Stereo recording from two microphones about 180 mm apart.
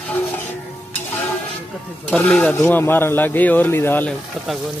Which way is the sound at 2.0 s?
5° left (ahead or behind).